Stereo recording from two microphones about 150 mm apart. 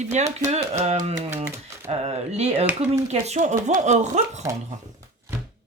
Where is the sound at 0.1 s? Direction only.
50° right (ahead or behind).